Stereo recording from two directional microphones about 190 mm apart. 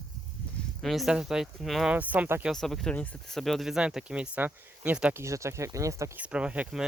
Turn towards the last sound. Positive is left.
turn(degrees=-5)  # may be behind; listen again after turning